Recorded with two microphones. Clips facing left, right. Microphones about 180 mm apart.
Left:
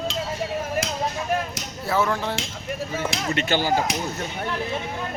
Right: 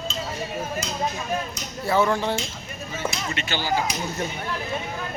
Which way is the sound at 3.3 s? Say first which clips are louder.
Left 7 dB; 50° left (ahead or behind).